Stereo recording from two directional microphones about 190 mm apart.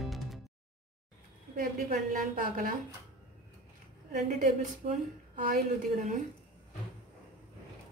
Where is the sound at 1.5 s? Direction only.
50° right (ahead or behind).